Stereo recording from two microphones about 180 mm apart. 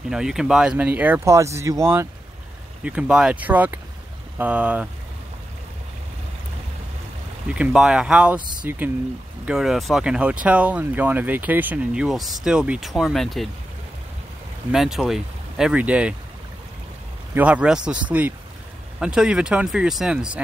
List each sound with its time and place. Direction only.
0.1 s speech: 5° right (ahead or behind)
7.4 s speech: 5° right (ahead or behind)
8.4 s speech: 25° right (ahead or behind)
8.6 s speech: 10° right (ahead or behind)
14.7 s speech: centre (ahead or behind)
17.3 s speech: 5° right (ahead or behind)